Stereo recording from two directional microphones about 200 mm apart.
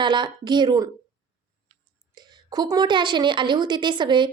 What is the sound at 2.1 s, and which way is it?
A woman's voice, 20° right (ahead or behind).